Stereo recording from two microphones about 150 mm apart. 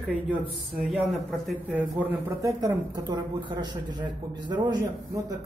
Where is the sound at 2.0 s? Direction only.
15° right (ahead or behind).